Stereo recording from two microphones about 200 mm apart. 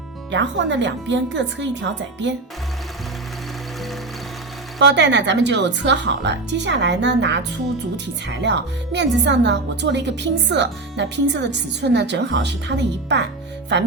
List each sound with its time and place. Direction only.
0.3 s a woman's voice: 65° right (ahead or behind)
4.8 s a woman's voice: 60° right (ahead or behind)